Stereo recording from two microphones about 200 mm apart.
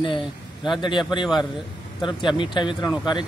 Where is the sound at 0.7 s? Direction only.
25° left (ahead or behind).